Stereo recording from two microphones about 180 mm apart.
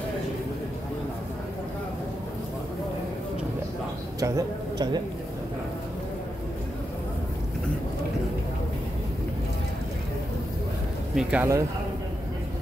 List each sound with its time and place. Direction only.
4.2 s a man's voice: 20° right (ahead or behind)
11.1 s speech: 5° right (ahead or behind)